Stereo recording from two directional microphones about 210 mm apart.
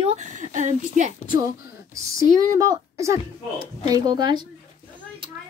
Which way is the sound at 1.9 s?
15° right (ahead or behind).